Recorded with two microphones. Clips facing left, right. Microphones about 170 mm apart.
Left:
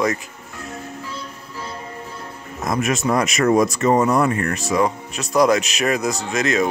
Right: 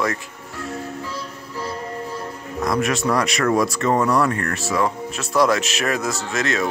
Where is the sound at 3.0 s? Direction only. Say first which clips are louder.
Left 2 dB; 20° left (ahead or behind).